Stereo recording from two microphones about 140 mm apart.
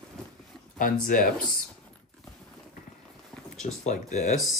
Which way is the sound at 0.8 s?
80° left.